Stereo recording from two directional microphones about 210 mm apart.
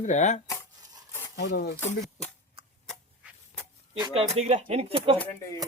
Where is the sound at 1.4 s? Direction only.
50° left (ahead or behind).